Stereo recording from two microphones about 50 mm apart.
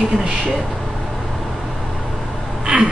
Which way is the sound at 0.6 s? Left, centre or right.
Centre.